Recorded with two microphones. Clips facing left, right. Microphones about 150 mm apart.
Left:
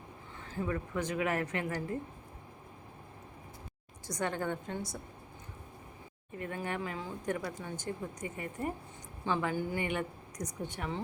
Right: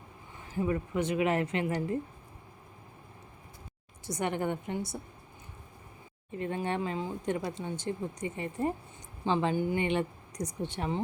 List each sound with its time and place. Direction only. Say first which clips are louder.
0.3 s speech: right 5 dB; 15° right (ahead or behind)
4.0 s speech: right 3 dB; 20° right (ahead or behind)
6.4 s speech: right 5 dB; 25° right (ahead or behind)